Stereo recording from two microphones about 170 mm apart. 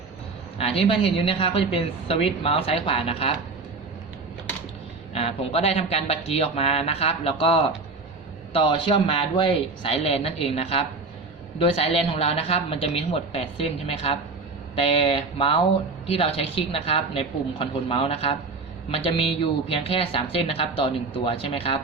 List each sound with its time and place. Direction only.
0.6 s speech: 30° left (ahead or behind)
5.1 s speech: 35° left (ahead or behind)